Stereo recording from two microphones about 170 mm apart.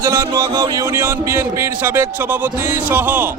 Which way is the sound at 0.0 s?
20° right (ahead or behind).